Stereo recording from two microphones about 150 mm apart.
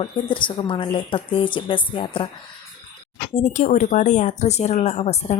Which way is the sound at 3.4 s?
50° left (ahead or behind).